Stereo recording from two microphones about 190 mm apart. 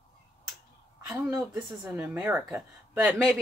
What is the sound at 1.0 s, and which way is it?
A woman's voice, 15° right (ahead or behind).